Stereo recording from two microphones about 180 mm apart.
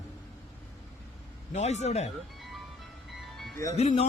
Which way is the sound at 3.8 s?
35° left (ahead or behind).